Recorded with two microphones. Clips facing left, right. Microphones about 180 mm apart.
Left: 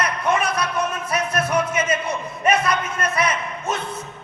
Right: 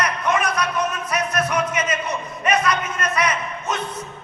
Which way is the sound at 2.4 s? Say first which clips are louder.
Left 1 dB; 30° left (ahead or behind).